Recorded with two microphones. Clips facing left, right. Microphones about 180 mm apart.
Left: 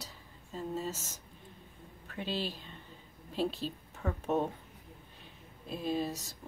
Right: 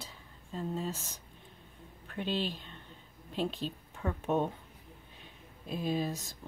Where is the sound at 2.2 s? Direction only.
5° left (ahead or behind).